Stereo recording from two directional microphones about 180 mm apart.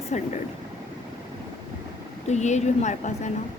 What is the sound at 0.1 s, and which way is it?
Speech, 40° left (ahead or behind).